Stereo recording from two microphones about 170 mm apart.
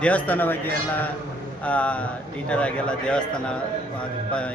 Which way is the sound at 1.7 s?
10° left (ahead or behind).